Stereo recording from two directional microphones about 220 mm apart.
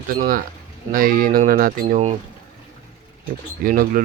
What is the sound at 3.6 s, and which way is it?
Speech, 40° right (ahead or behind).